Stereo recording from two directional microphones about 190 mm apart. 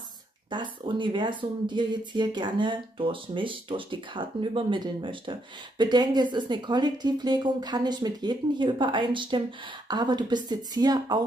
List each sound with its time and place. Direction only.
0.5 s speech: 25° right (ahead or behind)